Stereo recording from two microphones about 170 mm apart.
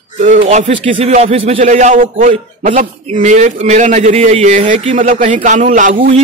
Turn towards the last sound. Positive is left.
turn(degrees=-40)  # may be behind; listen again after turning